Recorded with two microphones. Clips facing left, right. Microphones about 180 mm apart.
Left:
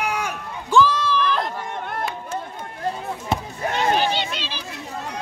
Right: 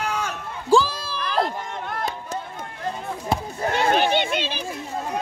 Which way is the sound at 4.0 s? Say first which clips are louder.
Right 2 dB; 55° right (ahead or behind).